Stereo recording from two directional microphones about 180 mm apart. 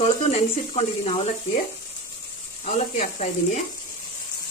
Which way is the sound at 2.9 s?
40° left (ahead or behind).